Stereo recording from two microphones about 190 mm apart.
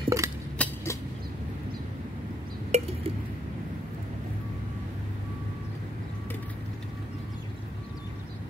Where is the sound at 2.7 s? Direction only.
35° right (ahead or behind).